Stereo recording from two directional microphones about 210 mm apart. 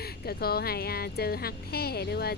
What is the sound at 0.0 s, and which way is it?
Speech, 50° left (ahead or behind).